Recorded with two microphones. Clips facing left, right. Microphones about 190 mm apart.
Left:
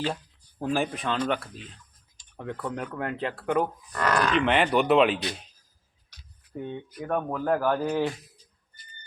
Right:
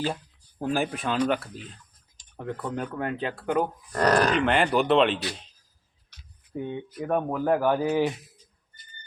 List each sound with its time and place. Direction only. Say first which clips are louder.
0.6 s speech: even; 5° right (ahead or behind)
3.9 s speech: right 3 dB; 40° right (ahead or behind)
4.4 s speech: even; centre (ahead or behind)
6.5 s speech: right 3 dB; 10° right (ahead or behind)